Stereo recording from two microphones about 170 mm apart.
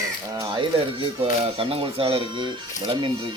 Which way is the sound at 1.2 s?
35° right (ahead or behind).